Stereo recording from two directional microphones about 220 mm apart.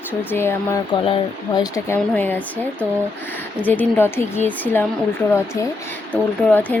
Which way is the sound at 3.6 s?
5° left (ahead or behind).